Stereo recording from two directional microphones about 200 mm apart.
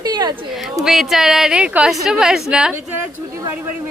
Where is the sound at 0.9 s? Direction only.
Centre (ahead or behind).